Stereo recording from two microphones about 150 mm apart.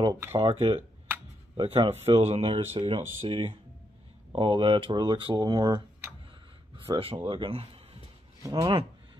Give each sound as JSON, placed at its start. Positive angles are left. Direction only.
{"t": 0.0, "sound": "speech", "side_deg": -20}
{"t": 0.4, "sound": "speech", "side_deg": -40}
{"t": 6.9, "sound": "speech", "side_deg": -40}
{"t": 8.4, "sound": "speech", "side_deg": -25}